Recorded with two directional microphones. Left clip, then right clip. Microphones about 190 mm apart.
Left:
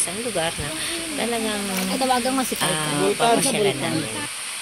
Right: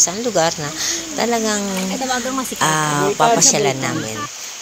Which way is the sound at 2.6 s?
30° right (ahead or behind).